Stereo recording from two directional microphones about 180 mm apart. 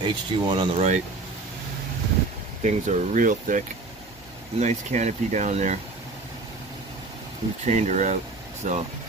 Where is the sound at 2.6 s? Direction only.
40° right (ahead or behind).